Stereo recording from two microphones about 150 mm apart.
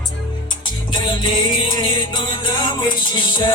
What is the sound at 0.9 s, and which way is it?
Music, 30° left (ahead or behind).